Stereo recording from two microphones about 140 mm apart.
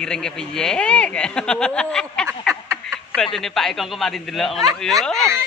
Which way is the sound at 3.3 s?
Centre (ahead or behind).